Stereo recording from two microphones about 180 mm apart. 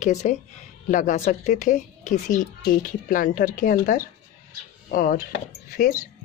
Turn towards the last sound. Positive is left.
turn(degrees=50)  # may be behind; listen again after turning